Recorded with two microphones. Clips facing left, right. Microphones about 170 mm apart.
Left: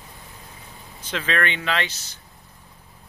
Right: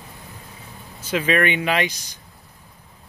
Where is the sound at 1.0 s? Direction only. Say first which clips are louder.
Right 5 dB; 10° right (ahead or behind).